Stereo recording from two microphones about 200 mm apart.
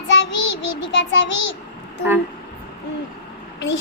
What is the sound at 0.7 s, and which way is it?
Child singing, 65° left (ahead or behind).